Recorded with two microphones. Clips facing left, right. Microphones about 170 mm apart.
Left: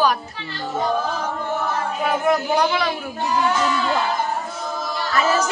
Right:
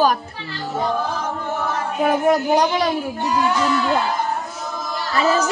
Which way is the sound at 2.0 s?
40° right (ahead or behind).